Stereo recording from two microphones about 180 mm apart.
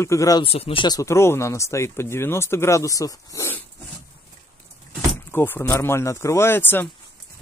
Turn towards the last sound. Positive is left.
turn(degrees=10)  # may be behind; listen again after turning